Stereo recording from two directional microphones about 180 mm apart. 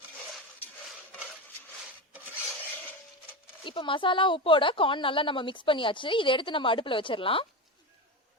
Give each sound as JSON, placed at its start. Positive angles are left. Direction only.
{"t": 3.6, "sound": "a woman's voice", "side_deg": 30}